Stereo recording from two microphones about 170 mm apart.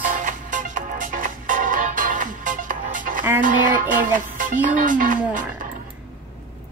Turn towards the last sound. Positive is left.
turn(degrees=-50)  # may be behind; listen again after turning